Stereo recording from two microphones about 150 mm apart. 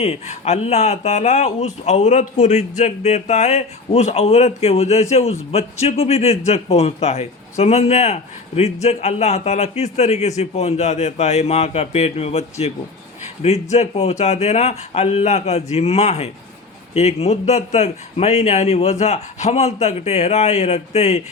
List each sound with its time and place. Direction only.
0.0 s speech: 45° left (ahead or behind)